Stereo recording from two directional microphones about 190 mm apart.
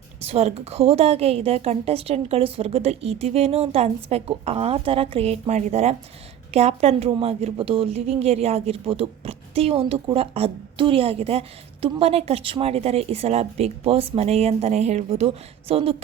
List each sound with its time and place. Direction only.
0.2 s speech: 35° right (ahead or behind)